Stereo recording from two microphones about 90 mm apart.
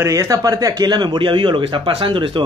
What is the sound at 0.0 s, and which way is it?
Speech, 35° right (ahead or behind).